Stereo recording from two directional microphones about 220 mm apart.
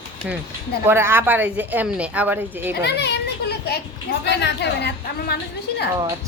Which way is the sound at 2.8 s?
50° left (ahead or behind).